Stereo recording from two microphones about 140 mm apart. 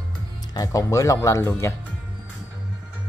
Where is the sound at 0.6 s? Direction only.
25° left (ahead or behind).